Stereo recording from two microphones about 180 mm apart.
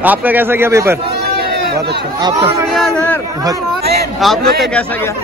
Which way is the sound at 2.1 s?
20° right (ahead or behind).